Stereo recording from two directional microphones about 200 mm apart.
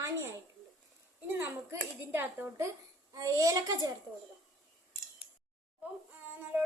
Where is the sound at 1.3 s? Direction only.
10° right (ahead or behind).